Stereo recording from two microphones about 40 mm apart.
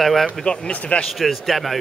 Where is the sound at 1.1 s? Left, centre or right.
Centre.